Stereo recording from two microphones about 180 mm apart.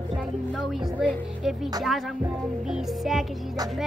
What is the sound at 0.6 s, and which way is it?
Speech, 5° right (ahead or behind).